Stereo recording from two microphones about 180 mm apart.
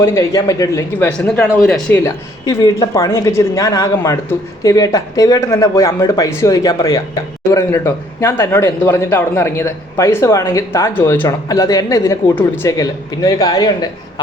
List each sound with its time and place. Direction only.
0.0 s a man's voice: 15° left (ahead or behind)